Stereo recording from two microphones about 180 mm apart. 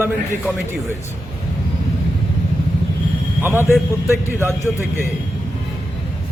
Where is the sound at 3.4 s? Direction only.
10° right (ahead or behind).